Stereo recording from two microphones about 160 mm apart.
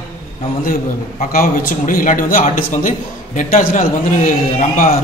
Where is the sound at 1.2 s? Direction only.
55° left (ahead or behind).